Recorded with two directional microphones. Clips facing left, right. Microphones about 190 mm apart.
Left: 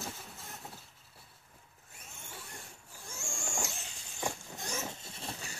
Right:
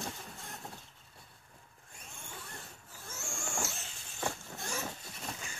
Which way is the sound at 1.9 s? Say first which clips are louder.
Right 1 dB; 10° left (ahead or behind).